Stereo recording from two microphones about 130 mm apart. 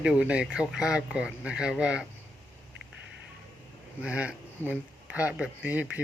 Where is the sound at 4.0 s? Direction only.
10° right (ahead or behind).